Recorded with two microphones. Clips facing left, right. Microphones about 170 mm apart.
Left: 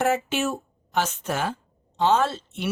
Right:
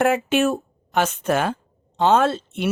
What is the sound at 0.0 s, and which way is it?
A woman's voice, 60° right (ahead or behind).